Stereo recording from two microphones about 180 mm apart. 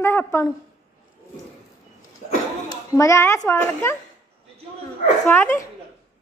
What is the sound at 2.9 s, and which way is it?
A woman's voice, 15° left (ahead or behind).